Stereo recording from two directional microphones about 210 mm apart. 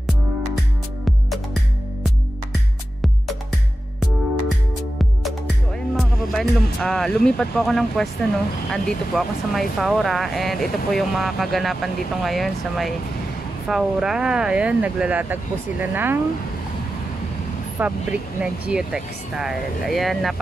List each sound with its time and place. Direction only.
5.9 s speech: centre (ahead or behind)
17.8 s speech: 10° right (ahead or behind)